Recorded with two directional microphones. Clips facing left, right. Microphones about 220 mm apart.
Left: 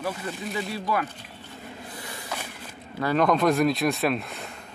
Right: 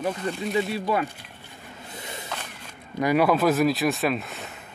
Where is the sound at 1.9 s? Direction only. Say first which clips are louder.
Right 1 dB; 25° right (ahead or behind).